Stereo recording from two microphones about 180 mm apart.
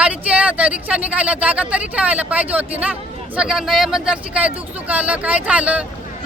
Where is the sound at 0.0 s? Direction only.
5° right (ahead or behind).